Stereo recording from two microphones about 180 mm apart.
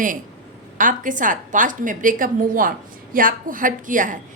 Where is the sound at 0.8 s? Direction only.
45° right (ahead or behind).